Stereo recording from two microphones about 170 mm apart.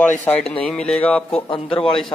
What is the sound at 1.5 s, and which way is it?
Speech, 30° left (ahead or behind).